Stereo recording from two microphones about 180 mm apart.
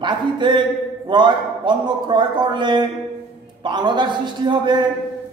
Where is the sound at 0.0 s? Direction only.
25° right (ahead or behind).